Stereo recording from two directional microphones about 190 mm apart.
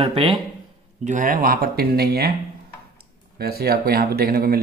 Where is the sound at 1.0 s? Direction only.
40° right (ahead or behind).